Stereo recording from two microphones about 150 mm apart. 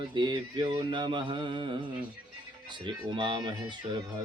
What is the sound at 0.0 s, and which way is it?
Mantra, 30° right (ahead or behind).